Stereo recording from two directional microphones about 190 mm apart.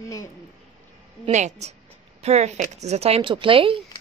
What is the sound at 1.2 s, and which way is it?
Speech, 40° right (ahead or behind).